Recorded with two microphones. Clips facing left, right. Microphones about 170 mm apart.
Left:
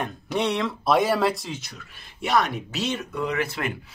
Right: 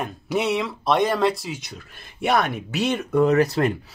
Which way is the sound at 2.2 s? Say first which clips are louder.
Right 2 dB; 55° right (ahead or behind).